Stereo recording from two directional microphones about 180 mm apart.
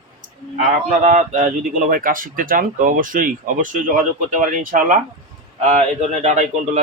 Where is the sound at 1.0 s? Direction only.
40° right (ahead or behind).